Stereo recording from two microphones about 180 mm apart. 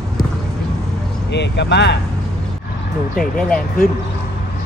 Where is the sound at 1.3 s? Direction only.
75° left (ahead or behind).